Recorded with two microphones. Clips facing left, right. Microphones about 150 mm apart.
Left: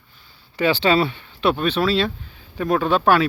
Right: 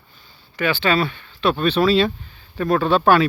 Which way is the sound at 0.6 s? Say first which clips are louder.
Left 2 dB; 30° left (ahead or behind).